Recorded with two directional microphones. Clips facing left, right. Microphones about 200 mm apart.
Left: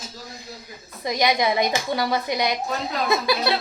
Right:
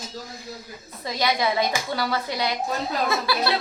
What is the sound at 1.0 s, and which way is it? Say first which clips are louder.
A woman's voice: left 3 dB; 15° left (ahead or behind).